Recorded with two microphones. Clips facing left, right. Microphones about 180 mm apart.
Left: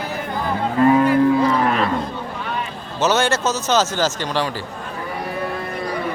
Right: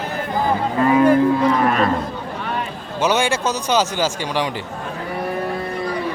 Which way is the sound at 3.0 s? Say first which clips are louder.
Even; 10° right (ahead or behind).